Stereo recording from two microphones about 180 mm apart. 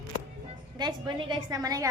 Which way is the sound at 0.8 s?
25° right (ahead or behind).